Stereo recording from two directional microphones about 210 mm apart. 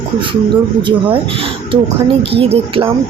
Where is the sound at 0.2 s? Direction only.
25° right (ahead or behind).